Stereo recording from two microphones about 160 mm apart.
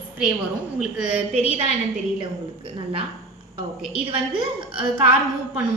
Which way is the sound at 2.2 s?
35° right (ahead or behind).